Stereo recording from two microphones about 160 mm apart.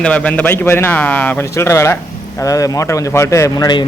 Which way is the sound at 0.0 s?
10° left (ahead or behind).